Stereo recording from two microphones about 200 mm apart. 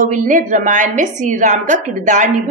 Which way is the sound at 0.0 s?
40° right (ahead or behind).